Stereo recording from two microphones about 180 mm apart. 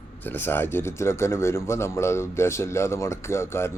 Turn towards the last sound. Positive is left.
turn(degrees=15)  # may be behind; listen again after turning